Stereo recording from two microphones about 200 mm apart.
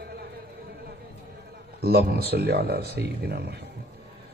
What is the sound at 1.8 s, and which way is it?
A man's voice, 50° right (ahead or behind).